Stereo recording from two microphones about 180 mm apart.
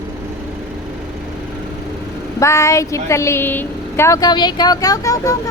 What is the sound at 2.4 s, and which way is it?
Speech, 15° left (ahead or behind).